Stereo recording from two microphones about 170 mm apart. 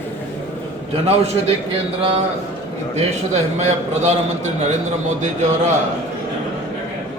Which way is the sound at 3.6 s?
40° right (ahead or behind).